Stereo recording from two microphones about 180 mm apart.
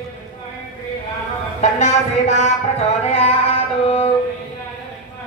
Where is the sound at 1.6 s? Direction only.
40° left (ahead or behind).